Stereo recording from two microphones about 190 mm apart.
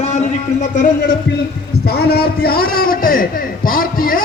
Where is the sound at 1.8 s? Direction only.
55° left (ahead or behind).